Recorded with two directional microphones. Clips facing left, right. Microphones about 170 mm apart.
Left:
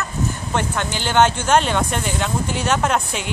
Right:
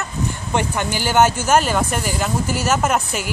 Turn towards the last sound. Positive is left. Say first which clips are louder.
# right 1 dB
turn(degrees=-5)  # may be behind; listen again after turning